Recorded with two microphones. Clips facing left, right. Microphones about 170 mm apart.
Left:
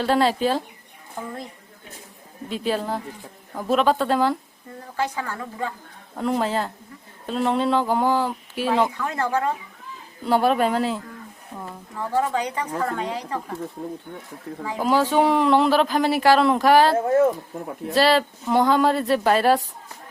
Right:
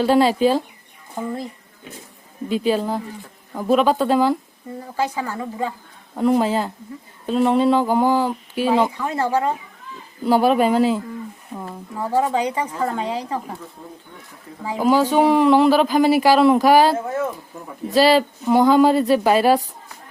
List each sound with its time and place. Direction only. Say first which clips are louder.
0.0 s speech: right 4 dB; 5° right (ahead or behind)
2.5 s speech: right 5 dB; centre (ahead or behind)
5.0 s a woman's voice: right 4 dB; 15° right (ahead or behind); by 8.9 s centre (ahead or behind)
9.0 s a woman's voice: right 3 dB; 10° right (ahead or behind)
14.8 s speech: right 3 dB; centre (ahead or behind)